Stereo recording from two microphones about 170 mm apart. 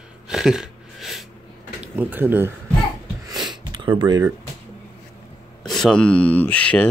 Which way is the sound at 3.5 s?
25° right (ahead or behind).